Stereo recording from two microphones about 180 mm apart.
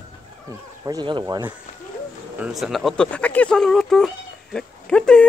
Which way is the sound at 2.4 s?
5° right (ahead or behind).